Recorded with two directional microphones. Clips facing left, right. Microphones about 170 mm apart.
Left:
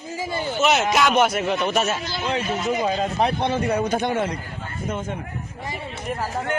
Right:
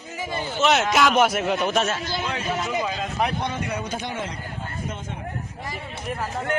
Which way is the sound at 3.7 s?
55° left (ahead or behind).